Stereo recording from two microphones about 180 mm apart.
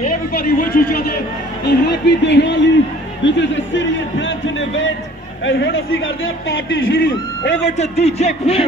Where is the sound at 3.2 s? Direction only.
85° left.